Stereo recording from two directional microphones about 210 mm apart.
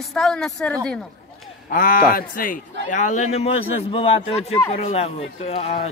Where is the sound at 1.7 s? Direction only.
40° left (ahead or behind).